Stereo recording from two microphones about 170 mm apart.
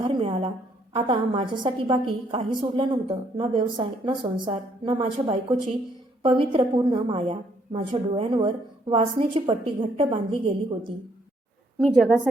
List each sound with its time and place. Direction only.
0.0 s a sound: 30° right (ahead or behind)
0.9 s a woman's voice: 30° right (ahead or behind)
11.8 s a woman's voice: centre (ahead or behind)